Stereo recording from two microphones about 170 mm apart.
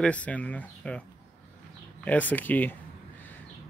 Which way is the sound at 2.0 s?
10° left (ahead or behind).